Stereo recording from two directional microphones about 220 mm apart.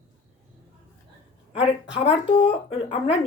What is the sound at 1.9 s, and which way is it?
Speech, 25° left (ahead or behind).